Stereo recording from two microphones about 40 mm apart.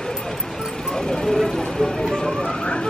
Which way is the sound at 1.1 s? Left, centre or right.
Centre.